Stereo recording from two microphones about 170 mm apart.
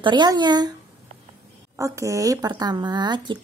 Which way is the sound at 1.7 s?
20° right (ahead or behind).